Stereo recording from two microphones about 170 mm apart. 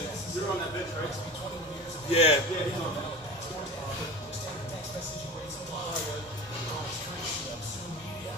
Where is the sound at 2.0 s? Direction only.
35° left (ahead or behind).